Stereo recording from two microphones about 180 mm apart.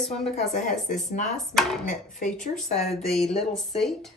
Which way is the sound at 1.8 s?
45° left (ahead or behind).